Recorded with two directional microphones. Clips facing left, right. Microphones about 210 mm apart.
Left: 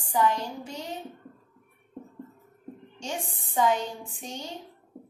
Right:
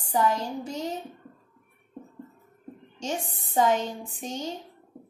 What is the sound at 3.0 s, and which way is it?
A woman's voice, 40° right (ahead or behind).